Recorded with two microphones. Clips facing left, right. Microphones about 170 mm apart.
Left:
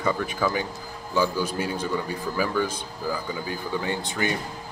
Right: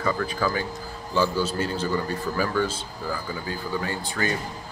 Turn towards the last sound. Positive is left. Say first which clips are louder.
# left 1 dB
turn(degrees=20)  # may be behind; listen again after turning